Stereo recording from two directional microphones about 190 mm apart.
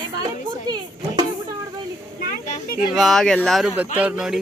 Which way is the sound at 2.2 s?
45° left (ahead or behind).